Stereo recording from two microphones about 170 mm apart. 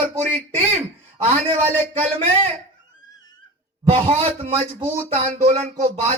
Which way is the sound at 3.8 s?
40° right (ahead or behind).